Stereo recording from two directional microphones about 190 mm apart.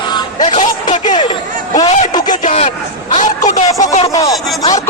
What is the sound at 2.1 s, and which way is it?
Speech, 20° left (ahead or behind).